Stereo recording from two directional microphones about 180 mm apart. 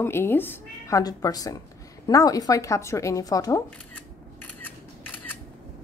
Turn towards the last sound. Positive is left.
turn(degrees=10)  # may be behind; listen again after turning